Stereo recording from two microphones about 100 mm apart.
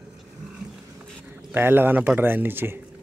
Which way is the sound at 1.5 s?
20° right (ahead or behind).